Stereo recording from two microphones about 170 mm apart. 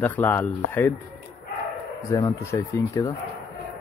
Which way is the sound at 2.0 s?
20° left (ahead or behind).